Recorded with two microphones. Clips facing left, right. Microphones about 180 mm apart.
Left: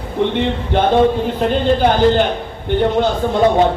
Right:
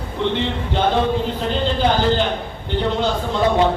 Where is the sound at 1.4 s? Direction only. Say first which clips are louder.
Left 6 dB; 55° left (ahead or behind).